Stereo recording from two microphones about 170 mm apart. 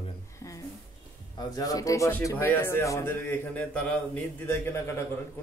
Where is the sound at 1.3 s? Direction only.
20° left (ahead or behind).